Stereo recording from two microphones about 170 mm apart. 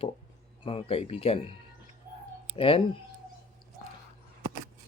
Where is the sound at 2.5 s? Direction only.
35° left (ahead or behind).